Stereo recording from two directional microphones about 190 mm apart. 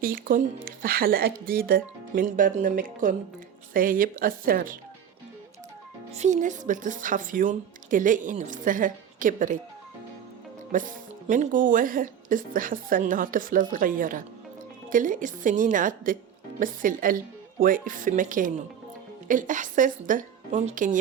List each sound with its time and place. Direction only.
0.0 s speech: 50° right (ahead or behind)
6.1 s speech: 40° right (ahead or behind)
10.7 s speech: 45° right (ahead or behind)